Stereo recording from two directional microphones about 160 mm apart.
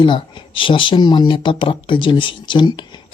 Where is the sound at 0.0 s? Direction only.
30° left (ahead or behind).